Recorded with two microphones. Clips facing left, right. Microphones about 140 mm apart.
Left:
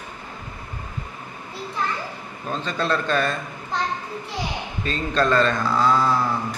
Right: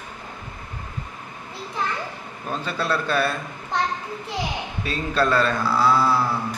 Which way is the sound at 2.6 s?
10° right (ahead or behind).